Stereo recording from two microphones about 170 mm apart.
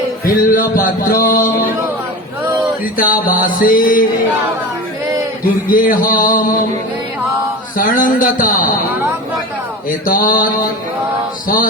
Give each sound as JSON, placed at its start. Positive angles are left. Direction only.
{"t": 0.3, "sound": "music", "side_deg": 55}
{"t": 3.0, "sound": "music", "side_deg": 55}
{"t": 5.6, "sound": "music", "side_deg": 55}
{"t": 7.8, "sound": "music", "side_deg": 50}
{"t": 10.1, "sound": "mantra", "side_deg": 55}
{"t": 11.4, "sound": "music", "side_deg": 55}